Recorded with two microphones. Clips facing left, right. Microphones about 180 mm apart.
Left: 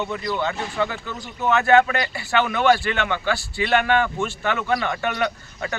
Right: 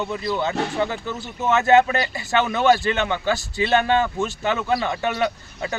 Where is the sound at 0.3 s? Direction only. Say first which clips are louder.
Right 5 dB; 15° right (ahead or behind).